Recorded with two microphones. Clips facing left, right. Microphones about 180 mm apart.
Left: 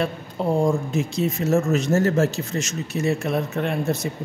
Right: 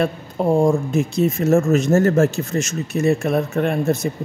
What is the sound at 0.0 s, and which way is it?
Speech, 50° right (ahead or behind).